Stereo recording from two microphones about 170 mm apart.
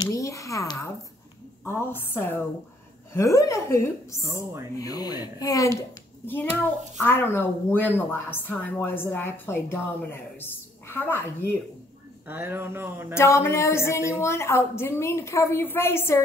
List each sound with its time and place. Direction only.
0.0 s speech: 20° left (ahead or behind)
12.3 s speech: 15° right (ahead or behind)
13.1 s speech: 15° left (ahead or behind)